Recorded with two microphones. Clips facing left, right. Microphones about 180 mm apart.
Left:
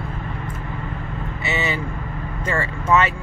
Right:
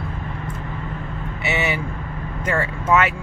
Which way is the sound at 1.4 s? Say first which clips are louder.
Right 1 dB; 15° right (ahead or behind).